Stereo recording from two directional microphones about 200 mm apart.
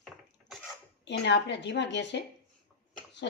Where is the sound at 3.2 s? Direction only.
60° left (ahead or behind).